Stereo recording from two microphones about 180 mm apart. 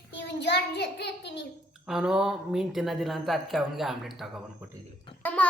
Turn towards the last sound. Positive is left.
turn(degrees=10)  # may be behind; listen again after turning